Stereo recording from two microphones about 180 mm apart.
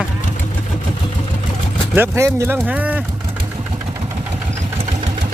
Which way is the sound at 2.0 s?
15° right (ahead or behind).